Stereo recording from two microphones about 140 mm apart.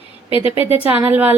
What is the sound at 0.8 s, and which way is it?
Speech, 10° right (ahead or behind).